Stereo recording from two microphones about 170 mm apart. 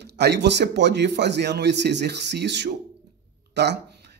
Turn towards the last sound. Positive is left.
turn(degrees=-80)